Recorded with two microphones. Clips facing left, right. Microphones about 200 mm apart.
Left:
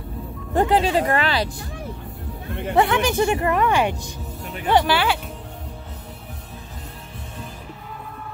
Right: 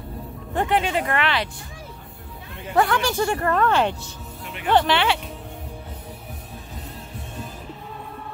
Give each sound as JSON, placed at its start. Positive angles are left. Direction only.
{"t": 0.6, "sound": "speech", "side_deg": 35}
{"t": 2.7, "sound": "a woman's voice", "side_deg": 20}